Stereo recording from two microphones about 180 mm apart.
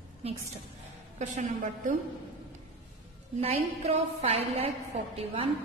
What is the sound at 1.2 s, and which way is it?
Speech, 40° right (ahead or behind).